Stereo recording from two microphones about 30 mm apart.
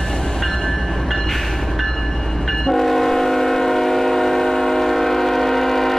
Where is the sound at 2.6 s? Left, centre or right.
Centre.